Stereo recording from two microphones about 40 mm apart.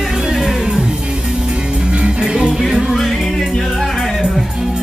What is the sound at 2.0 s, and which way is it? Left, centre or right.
Music, right.